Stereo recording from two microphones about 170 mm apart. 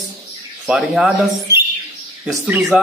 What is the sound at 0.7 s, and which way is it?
Speech, 5° right (ahead or behind).